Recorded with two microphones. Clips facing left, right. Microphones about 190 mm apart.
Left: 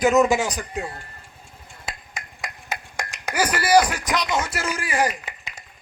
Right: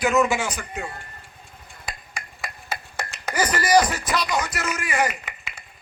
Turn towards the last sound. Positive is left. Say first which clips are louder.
# left 2 dB
turn(degrees=35)  # may be behind; listen again after turning